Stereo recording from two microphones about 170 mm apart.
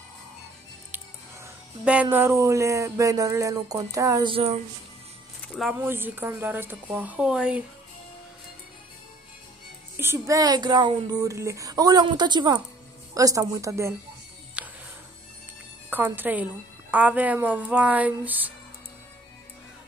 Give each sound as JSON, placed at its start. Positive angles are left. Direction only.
{"t": 1.9, "sound": "speech", "side_deg": -10}
{"t": 4.3, "sound": "speech", "side_deg": -35}
{"t": 5.8, "sound": "speech", "side_deg": -15}
{"t": 9.9, "sound": "speech", "side_deg": -15}
{"t": 14.6, "sound": "music", "side_deg": -5}
{"t": 15.9, "sound": "speech", "side_deg": -10}